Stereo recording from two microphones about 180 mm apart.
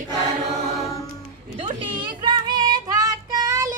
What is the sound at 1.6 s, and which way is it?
Child singing, 30° right (ahead or behind).